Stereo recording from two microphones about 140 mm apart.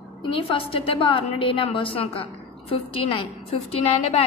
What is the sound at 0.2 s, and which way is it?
A woman's voice, 40° left (ahead or behind).